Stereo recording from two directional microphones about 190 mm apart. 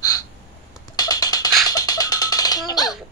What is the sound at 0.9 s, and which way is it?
Music, 20° left (ahead or behind).